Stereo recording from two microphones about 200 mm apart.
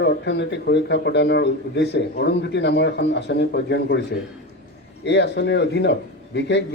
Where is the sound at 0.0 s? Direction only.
60° left (ahead or behind).